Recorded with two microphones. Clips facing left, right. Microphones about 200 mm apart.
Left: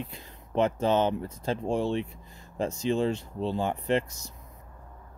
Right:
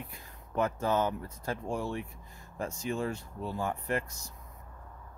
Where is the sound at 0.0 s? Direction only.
25° left (ahead or behind).